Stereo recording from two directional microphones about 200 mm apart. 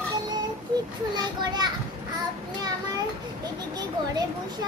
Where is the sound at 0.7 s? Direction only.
20° right (ahead or behind).